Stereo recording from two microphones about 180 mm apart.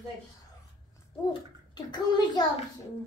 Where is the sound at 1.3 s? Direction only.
25° left (ahead or behind).